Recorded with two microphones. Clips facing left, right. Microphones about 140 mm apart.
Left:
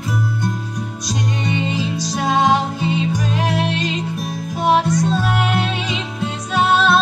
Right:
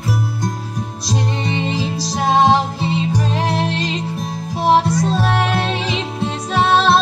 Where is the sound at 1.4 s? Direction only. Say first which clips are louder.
Even; 35° right (ahead or behind).